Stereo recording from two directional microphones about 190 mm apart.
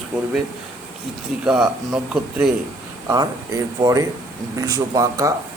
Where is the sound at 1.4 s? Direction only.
5° right (ahead or behind).